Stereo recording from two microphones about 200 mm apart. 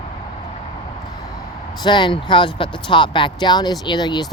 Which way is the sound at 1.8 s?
20° left (ahead or behind).